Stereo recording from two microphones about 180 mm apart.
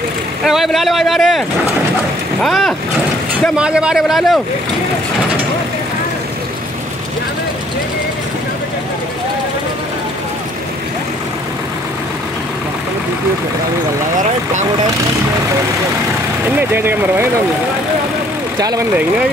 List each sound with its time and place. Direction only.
0.4 s speech: centre (ahead or behind)
2.4 s speech: centre (ahead or behind)
16.5 s speech: 10° right (ahead or behind)
18.6 s speech: 20° right (ahead or behind)